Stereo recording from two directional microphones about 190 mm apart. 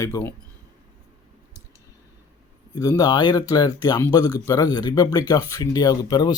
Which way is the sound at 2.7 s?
20° left (ahead or behind).